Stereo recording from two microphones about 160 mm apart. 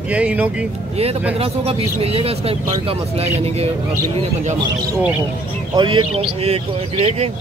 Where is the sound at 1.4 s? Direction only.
35° right (ahead or behind).